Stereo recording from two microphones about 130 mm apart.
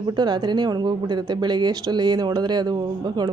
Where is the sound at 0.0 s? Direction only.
35° right (ahead or behind).